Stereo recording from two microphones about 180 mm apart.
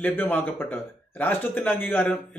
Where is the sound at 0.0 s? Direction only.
10° left (ahead or behind).